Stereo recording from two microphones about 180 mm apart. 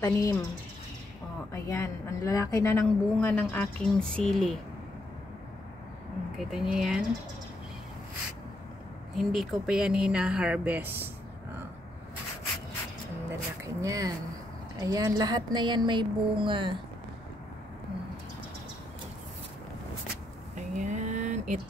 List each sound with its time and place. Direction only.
0.0 s a woman's voice: 15° left (ahead or behind)
1.5 s a woman's voice: 15° left (ahead or behind); by 4.6 s centre (ahead or behind)
6.3 s speech: centre (ahead or behind)
9.1 s speech: centre (ahead or behind)
13.7 s a sound: 20° right (ahead or behind)
20.5 s a sound: 45° right (ahead or behind)